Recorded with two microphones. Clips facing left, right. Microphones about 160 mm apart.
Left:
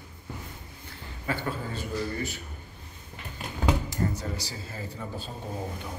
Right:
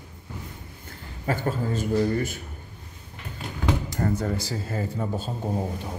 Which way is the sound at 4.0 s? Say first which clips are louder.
Right 5 dB; 55° right (ahead or behind).